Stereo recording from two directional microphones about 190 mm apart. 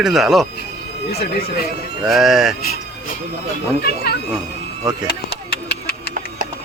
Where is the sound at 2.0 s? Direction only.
Centre (ahead or behind).